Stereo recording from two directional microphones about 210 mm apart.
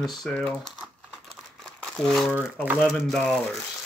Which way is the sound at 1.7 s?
Centre (ahead or behind).